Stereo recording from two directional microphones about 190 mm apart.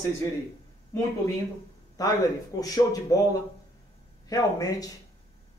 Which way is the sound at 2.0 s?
20° left (ahead or behind).